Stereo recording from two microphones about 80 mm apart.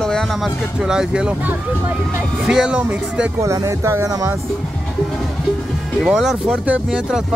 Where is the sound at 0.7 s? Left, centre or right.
Centre.